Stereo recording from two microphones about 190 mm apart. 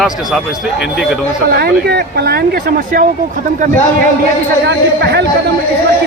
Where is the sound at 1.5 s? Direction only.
55° right (ahead or behind).